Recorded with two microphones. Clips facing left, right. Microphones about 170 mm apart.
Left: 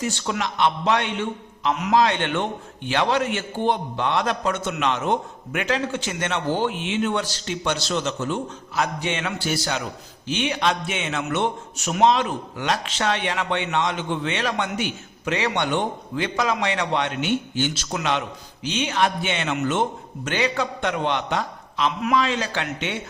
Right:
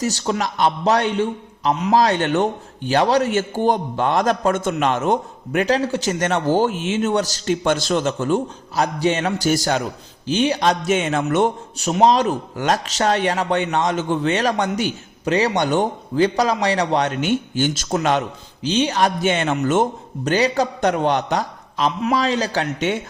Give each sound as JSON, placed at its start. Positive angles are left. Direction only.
{"t": 0.0, "sound": "a man's voice", "side_deg": -40}
{"t": 8.7, "sound": "a man's voice", "side_deg": -35}
{"t": 10.2, "sound": "a man's voice", "side_deg": -35}
{"t": 11.8, "sound": "a man's voice", "side_deg": -35}
{"t": 18.6, "sound": "a man's voice", "side_deg": -35}